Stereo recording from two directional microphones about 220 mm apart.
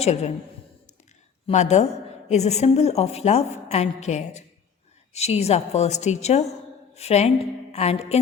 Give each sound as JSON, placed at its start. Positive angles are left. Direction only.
{"t": 0.0, "sound": "a woman's voice", "side_deg": 30}
{"t": 1.5, "sound": "a woman's voice", "side_deg": 30}